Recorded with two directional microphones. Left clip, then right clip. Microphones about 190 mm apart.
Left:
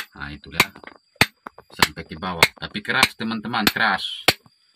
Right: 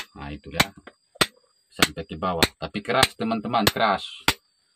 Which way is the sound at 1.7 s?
Centre (ahead or behind).